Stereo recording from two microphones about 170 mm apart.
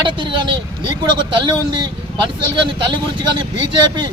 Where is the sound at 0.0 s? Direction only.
30° right (ahead or behind).